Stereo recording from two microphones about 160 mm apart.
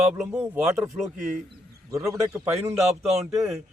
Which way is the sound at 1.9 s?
20° right (ahead or behind).